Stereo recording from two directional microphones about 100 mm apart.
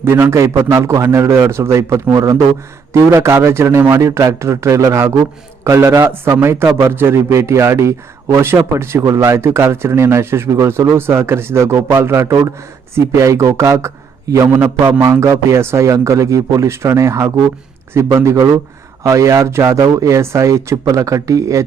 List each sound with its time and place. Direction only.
0.0 s a man's voice: 25° right (ahead or behind)
14.5 s a man's voice: 20° right (ahead or behind)